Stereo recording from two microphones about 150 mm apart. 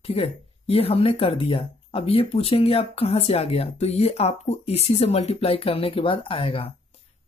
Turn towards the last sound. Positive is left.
turn(degrees=35)  # may be behind; listen again after turning